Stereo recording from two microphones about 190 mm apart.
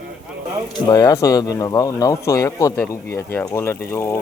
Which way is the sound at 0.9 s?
20° left (ahead or behind).